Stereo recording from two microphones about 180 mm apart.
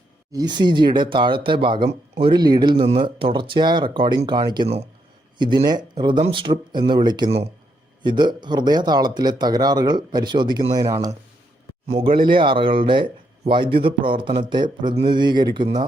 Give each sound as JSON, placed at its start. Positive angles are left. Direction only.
{"t": 0.3, "sound": "speech", "side_deg": -25}
{"t": 11.9, "sound": "speech", "side_deg": -35}